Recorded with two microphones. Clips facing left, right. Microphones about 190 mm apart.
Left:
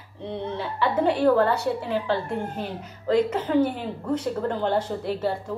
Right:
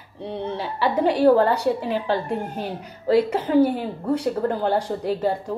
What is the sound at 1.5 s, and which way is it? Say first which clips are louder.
A woman's voice: right 3 dB; 15° right (ahead or behind).